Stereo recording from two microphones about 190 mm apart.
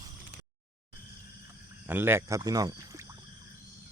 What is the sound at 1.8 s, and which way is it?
Speech, 10° right (ahead or behind).